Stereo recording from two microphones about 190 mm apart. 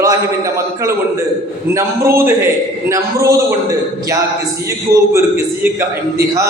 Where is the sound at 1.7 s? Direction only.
15° right (ahead or behind).